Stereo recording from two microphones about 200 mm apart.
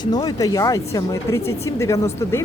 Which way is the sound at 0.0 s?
20° left (ahead or behind).